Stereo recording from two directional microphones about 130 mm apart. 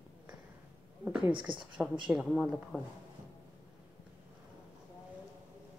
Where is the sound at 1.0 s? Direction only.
10° right (ahead or behind).